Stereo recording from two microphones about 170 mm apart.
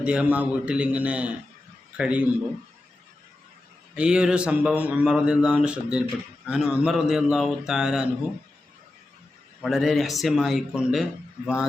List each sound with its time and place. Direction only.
0.0 s a man's voice: 5° right (ahead or behind)
3.9 s a man's voice: 5° right (ahead or behind)
9.6 s a man's voice: centre (ahead or behind)